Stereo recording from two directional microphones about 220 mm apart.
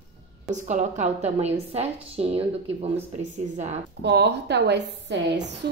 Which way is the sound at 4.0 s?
50° right (ahead or behind).